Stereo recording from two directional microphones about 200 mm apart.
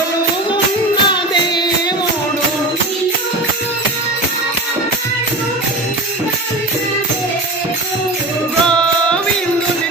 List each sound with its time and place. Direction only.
1.0 s music: 20° left (ahead or behind)